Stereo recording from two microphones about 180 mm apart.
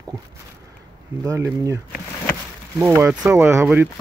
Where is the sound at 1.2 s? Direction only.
20° right (ahead or behind).